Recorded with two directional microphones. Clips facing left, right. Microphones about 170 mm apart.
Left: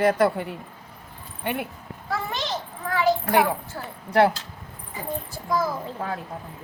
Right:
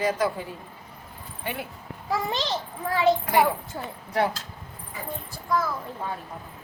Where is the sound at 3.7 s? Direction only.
15° right (ahead or behind).